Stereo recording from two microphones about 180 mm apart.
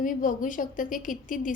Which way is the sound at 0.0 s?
50° left (ahead or behind).